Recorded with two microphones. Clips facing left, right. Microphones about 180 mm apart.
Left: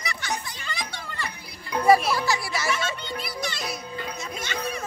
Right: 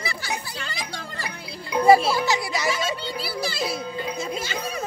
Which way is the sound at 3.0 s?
30° right (ahead or behind).